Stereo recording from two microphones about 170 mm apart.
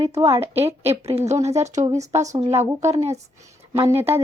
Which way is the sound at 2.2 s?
20° right (ahead or behind).